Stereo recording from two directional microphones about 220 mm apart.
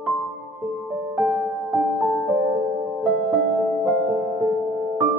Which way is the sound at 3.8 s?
5° right (ahead or behind).